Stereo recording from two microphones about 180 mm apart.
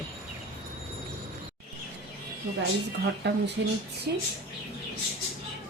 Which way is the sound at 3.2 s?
70° right (ahead or behind).